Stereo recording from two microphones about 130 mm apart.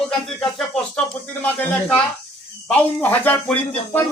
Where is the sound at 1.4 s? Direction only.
15° left (ahead or behind).